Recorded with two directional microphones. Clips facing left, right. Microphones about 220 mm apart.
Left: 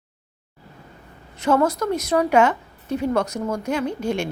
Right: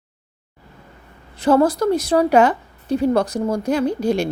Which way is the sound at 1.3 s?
35° right (ahead or behind).